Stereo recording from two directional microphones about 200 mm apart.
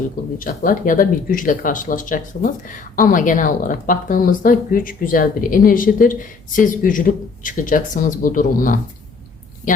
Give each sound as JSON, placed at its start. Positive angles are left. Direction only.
{"t": 0.3, "sound": "speech", "side_deg": 45}